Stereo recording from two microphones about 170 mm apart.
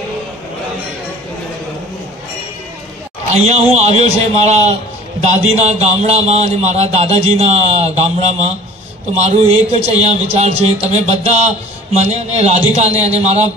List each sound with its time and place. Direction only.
3.3 s speech: 40° right (ahead or behind)
9.9 s speech: 40° right (ahead or behind)